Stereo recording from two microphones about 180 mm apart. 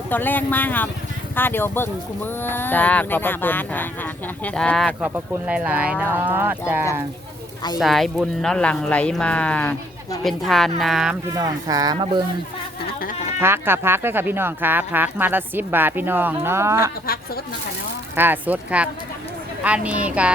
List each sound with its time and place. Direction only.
0.1 s speech: 10° left (ahead or behind)
4.9 s speech: 10° right (ahead or behind)
7.8 s speech: centre (ahead or behind)
11.3 s speech: 20° right (ahead or behind)
13.4 s speech: 15° right (ahead or behind)
18.2 s speech: 10° right (ahead or behind)